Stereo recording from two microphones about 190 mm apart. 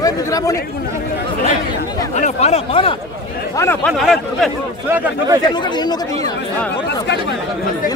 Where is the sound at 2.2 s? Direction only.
35° left (ahead or behind).